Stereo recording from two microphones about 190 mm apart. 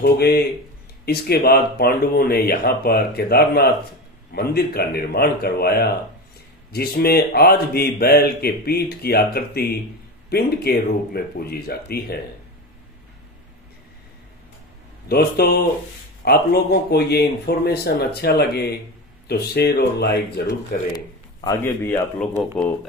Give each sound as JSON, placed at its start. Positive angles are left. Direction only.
{"t": 0.0, "sound": "speech", "side_deg": 55}
{"t": 15.0, "sound": "speech", "side_deg": 55}
{"t": 21.5, "sound": "a man's voice", "side_deg": 15}